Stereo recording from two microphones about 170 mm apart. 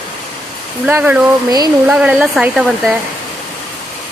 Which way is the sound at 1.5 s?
25° right (ahead or behind).